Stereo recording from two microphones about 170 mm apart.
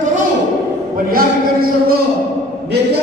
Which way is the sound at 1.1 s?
60° right (ahead or behind).